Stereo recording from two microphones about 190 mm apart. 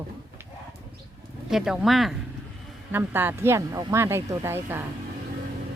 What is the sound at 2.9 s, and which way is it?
Speech, 10° right (ahead or behind).